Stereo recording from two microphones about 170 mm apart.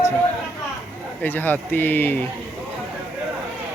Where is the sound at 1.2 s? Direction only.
10° left (ahead or behind).